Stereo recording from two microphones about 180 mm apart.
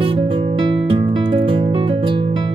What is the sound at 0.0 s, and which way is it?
Music, 30° right (ahead or behind).